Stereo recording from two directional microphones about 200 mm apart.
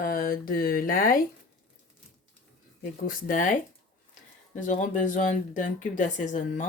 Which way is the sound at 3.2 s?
40° left (ahead or behind).